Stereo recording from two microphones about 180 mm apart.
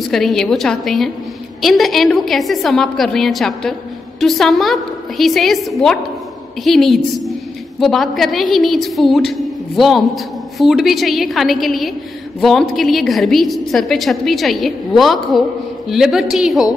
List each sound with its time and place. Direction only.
0.1 s a woman's voice: centre (ahead or behind)